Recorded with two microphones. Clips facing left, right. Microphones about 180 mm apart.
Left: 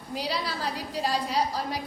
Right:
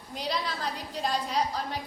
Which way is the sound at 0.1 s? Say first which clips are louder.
Left 1 dB; 10° left (ahead or behind).